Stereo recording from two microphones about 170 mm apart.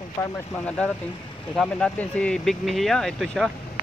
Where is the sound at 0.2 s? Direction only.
15° left (ahead or behind).